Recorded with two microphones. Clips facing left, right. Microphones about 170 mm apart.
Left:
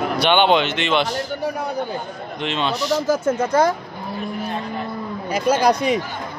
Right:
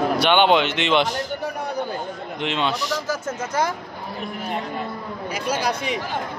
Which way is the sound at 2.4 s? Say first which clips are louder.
Left 1 dB; 15° right (ahead or behind).